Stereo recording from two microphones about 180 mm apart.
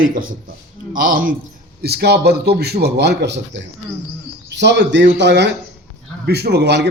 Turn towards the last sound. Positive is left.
turn(degrees=-70)  # may be behind; listen again after turning